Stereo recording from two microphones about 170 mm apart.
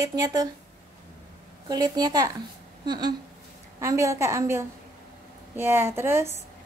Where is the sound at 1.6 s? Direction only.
25° right (ahead or behind).